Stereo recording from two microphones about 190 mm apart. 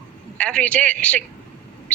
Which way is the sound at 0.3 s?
5° left (ahead or behind).